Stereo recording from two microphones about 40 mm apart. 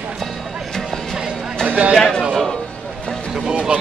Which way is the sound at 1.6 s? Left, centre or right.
Right.